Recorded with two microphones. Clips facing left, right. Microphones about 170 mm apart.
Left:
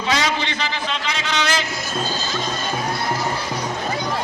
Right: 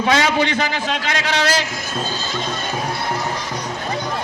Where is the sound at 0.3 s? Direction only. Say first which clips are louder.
Right 5 dB; 50° right (ahead or behind).